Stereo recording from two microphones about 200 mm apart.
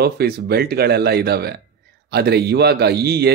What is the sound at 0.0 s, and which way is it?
A man's voice, 50° right (ahead or behind).